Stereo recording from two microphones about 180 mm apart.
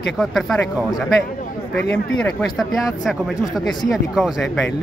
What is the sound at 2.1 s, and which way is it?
Speech, centre (ahead or behind).